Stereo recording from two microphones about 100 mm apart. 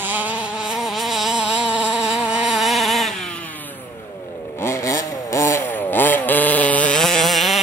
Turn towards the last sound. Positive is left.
turn(degrees=0)  # may be behind; listen again after turning